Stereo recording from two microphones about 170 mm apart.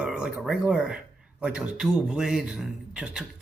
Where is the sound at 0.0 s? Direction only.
5° right (ahead or behind).